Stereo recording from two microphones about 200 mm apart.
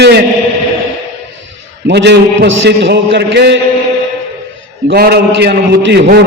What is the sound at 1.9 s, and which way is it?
A man's voice, 55° right (ahead or behind).